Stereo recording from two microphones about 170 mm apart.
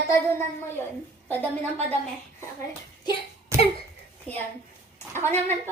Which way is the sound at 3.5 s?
15° right (ahead or behind).